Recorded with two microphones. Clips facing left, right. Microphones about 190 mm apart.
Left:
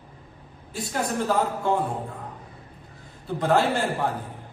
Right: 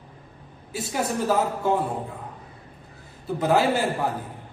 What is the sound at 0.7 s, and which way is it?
A woman's voice, 5° right (ahead or behind).